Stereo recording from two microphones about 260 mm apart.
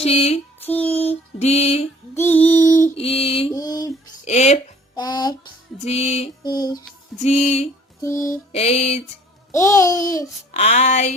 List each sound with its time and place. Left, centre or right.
0.0 s female singing: left
0.6 s child singing: centre
1.0 s mantra: left
2.1 s music: centre
2.9 s female singing: left
4.3 s a sound: left
5.8 s music: left
8.2 s mantra: left
9.5 s babbling: centre
10.5 s a sound: left